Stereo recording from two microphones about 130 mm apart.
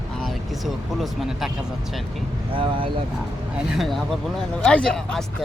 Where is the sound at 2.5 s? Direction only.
40° right (ahead or behind).